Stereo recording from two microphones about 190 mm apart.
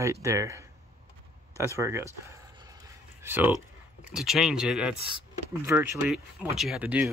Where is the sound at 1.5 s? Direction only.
15° right (ahead or behind).